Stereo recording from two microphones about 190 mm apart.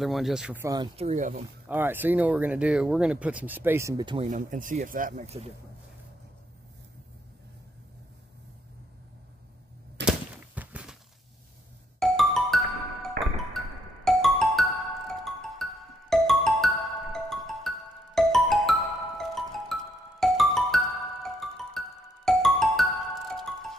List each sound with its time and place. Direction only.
0.0 s speech: centre (ahead or behind)
0.9 s speech: 35° right (ahead or behind)
1.7 s speech: 10° right (ahead or behind)
4.3 s speech: 45° right (ahead or behind)
10.0 s a sound: 5° right (ahead or behind)
12.0 s music: centre (ahead or behind)